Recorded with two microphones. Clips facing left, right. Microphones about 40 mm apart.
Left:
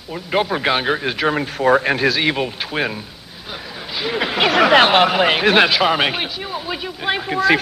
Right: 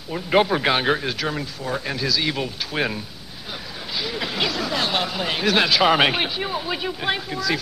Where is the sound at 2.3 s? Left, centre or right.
Left.